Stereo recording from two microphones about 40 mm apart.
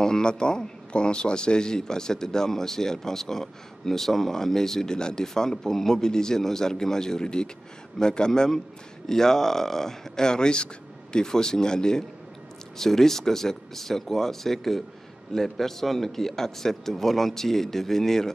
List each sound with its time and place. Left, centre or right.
0.0 s a man's voice: centre